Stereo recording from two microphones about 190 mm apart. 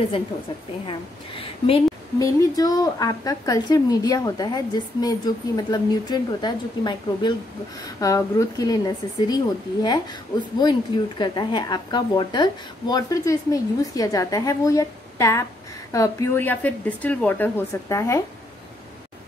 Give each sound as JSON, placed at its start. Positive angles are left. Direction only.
{"t": 0.8, "sound": "a woman's voice", "side_deg": 30}
{"t": 10.6, "sound": "a woman's voice", "side_deg": 25}